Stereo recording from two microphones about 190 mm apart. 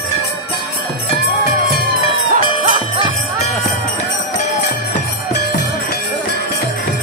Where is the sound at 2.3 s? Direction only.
40° right (ahead or behind).